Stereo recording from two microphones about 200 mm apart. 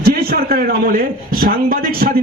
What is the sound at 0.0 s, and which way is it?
A man's voice, 50° right (ahead or behind).